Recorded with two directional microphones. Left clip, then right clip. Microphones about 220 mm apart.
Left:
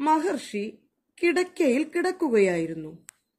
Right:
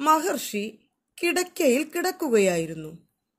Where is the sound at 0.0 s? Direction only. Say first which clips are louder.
Right 2 dB; 50° right (ahead or behind).